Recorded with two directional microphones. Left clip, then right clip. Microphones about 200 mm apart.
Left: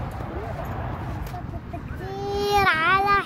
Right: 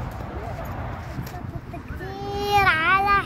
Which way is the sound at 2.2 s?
10° left (ahead or behind).